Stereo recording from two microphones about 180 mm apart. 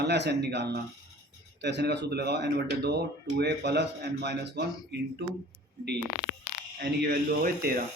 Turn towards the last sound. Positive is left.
turn(degrees=-55)  # may be behind; listen again after turning